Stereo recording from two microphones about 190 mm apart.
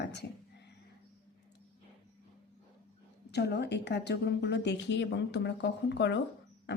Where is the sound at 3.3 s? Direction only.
60° left (ahead or behind).